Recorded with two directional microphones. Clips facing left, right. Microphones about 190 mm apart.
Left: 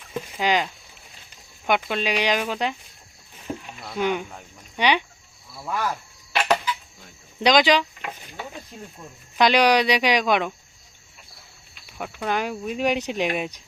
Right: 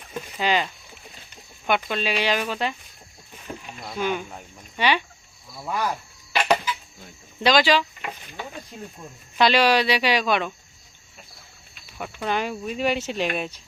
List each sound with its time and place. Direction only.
0.3 s speech: 10° left (ahead or behind)
3.5 s a sound: 20° left (ahead or behind)
3.9 s speech: 15° left (ahead or behind)
5.6 s speech: centre (ahead or behind)
6.3 s a sound: centre (ahead or behind)
7.4 s speech: 20° left (ahead or behind)
9.4 s speech: 15° left (ahead or behind)
11.9 s speech: 5° left (ahead or behind)